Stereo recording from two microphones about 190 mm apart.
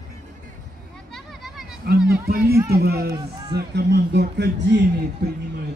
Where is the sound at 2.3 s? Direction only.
50° right (ahead or behind).